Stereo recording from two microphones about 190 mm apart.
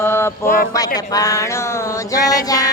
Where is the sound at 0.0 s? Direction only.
15° left (ahead or behind).